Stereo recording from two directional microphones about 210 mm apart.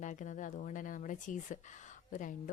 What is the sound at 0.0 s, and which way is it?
Speech, 35° left (ahead or behind).